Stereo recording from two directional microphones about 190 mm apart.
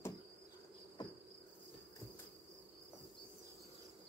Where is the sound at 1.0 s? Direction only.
20° left (ahead or behind).